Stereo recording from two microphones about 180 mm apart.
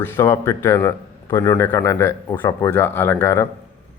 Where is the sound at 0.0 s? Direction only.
15° left (ahead or behind).